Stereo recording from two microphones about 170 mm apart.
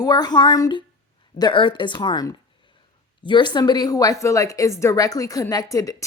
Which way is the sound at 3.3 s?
25° left (ahead or behind).